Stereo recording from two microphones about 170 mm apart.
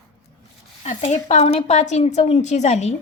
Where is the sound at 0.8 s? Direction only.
45° left (ahead or behind).